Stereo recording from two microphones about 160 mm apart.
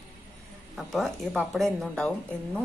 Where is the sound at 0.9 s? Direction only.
Centre (ahead or behind).